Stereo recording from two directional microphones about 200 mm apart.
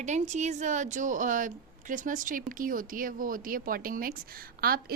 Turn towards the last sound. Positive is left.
turn(degrees=-50)  # may be behind; listen again after turning